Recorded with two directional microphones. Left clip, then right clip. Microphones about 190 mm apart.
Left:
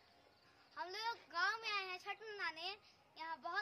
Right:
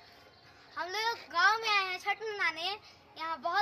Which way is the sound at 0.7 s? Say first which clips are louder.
Right 11 dB; centre (ahead or behind).